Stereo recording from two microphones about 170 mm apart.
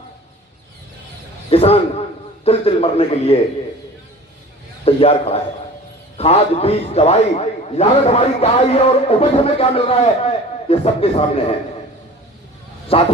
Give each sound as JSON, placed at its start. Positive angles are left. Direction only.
{"t": 1.5, "sound": "a man's voice", "side_deg": 35}
{"t": 4.9, "sound": "a man's voice", "side_deg": 35}
{"t": 12.9, "sound": "a man's voice", "side_deg": 35}